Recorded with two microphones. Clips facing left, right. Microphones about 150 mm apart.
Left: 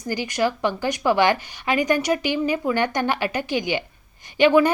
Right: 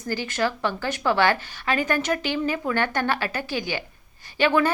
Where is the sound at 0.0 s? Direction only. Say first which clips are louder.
Left 3 dB; 15° left (ahead or behind).